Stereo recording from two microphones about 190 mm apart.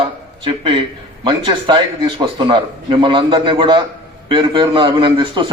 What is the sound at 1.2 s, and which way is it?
A man's voice, 25° right (ahead or behind).